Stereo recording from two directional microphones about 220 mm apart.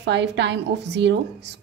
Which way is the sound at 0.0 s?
50° right (ahead or behind).